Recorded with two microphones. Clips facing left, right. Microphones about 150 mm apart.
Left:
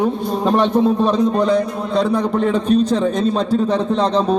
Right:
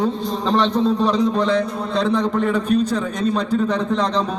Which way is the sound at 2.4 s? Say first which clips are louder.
Left 3 dB; 25° left (ahead or behind).